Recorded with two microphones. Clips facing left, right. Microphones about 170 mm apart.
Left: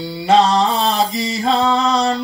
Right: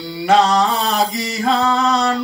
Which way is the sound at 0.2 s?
25° left (ahead or behind).